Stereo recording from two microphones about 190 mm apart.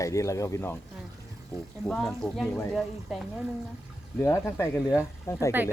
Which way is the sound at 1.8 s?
Centre (ahead or behind).